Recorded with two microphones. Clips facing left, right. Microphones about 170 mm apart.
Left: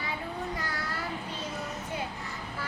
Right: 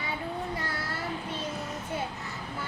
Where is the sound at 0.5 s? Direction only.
25° right (ahead or behind).